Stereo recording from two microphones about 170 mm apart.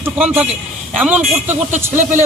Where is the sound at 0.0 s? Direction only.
10° right (ahead or behind).